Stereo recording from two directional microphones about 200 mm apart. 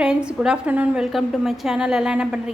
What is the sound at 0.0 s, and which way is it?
A woman's voice, 5° right (ahead or behind).